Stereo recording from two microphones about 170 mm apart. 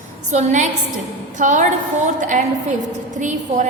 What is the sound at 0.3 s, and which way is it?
A woman's voice, 45° right (ahead or behind).